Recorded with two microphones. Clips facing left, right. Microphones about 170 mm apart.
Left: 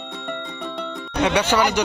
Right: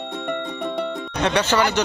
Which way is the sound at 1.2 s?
10° left (ahead or behind).